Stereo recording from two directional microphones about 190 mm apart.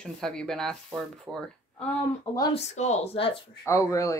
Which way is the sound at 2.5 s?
35° left (ahead or behind).